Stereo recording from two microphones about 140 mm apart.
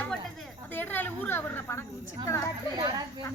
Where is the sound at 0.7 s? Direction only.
15° left (ahead or behind).